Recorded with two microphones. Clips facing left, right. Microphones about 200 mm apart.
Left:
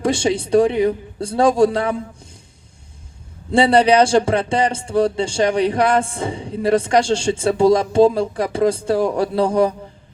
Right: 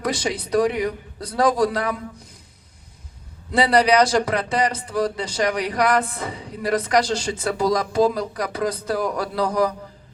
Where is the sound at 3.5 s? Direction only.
30° left (ahead or behind).